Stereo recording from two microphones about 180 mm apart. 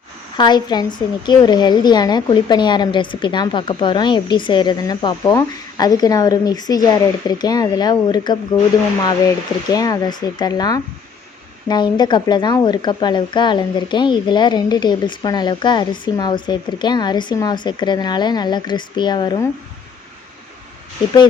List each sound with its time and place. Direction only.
0.3 s a woman's voice: 25° left (ahead or behind)
9.6 s a woman's voice: 20° left (ahead or behind)